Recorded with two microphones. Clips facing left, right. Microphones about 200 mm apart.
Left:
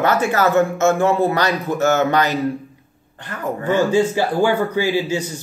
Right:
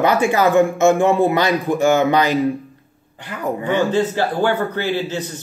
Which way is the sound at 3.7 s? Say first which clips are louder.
Left 2 dB; 10° left (ahead or behind).